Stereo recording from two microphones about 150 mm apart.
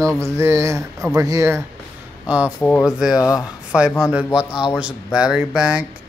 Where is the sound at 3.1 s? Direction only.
20° left (ahead or behind).